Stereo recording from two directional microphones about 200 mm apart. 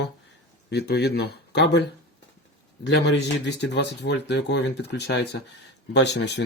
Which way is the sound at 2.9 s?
60° left (ahead or behind).